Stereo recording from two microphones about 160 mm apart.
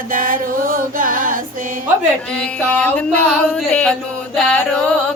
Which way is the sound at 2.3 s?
5° left (ahead or behind).